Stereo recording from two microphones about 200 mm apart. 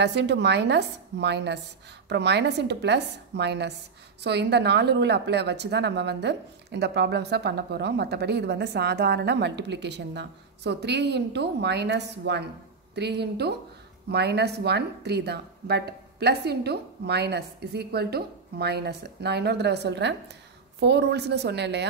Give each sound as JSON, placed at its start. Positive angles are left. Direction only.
{"t": 0.0, "sound": "a woman's voice", "side_deg": -60}